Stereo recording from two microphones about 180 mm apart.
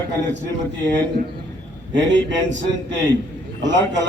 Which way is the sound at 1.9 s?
80° right.